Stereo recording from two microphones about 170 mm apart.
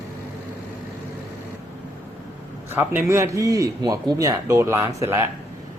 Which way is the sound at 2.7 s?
15° right (ahead or behind).